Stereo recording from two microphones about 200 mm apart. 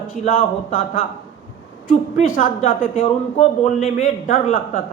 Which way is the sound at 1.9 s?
45° left (ahead or behind).